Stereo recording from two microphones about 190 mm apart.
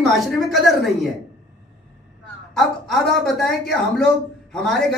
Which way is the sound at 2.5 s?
Centre (ahead or behind).